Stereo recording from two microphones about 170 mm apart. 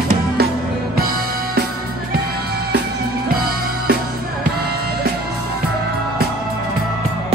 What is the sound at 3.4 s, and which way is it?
Music, 60° right (ahead or behind).